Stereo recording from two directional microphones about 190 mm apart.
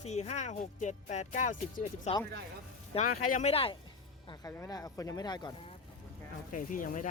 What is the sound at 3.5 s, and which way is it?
Speech, 30° left (ahead or behind).